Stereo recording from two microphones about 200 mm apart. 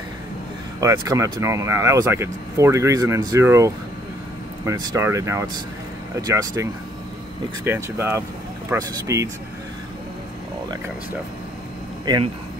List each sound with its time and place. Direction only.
0.7 s speech: 15° right (ahead or behind)